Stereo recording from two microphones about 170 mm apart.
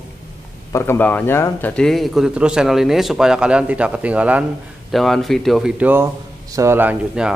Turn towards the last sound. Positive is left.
turn(degrees=-5)  # may be behind; listen again after turning